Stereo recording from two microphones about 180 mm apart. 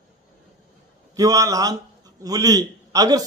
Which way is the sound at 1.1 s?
20° right (ahead or behind).